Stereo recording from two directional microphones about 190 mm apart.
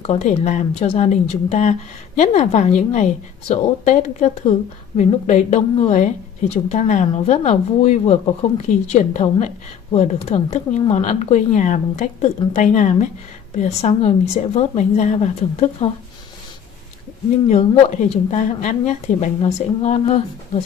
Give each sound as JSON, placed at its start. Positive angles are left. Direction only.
{"t": 0.0, "sound": "speech", "side_deg": 35}
{"t": 17.5, "sound": "speech", "side_deg": 40}